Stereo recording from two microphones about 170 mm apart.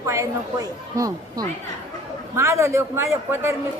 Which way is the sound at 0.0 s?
20° right (ahead or behind).